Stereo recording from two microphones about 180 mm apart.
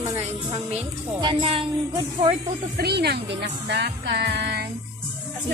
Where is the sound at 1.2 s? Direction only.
30° right (ahead or behind).